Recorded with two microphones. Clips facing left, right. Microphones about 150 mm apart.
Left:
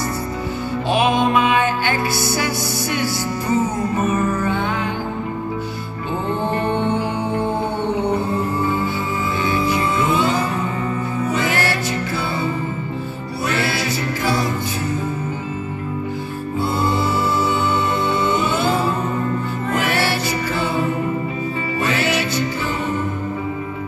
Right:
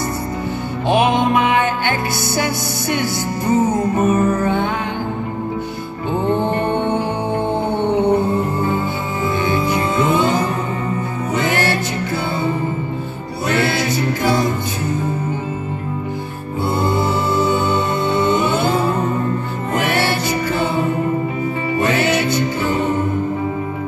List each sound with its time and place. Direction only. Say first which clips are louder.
0.8 s music: right 3 dB; 20° right (ahead or behind)
2.9 s music: right 4 dB; 50° right (ahead or behind)
9.5 s music: right 1 dB; 20° right (ahead or behind)
11.3 s music: right 4 dB; 20° right (ahead or behind)
13.5 s music: right 4 dB; 50° right (ahead or behind)
13.7 s music: right 4 dB; 20° right (ahead or behind)
17.4 s music: right 2 dB; 20° right (ahead or behind)
19.7 s music: right 2 dB; 20° right (ahead or behind)
21.8 s music: right 3 dB; 20° right (ahead or behind)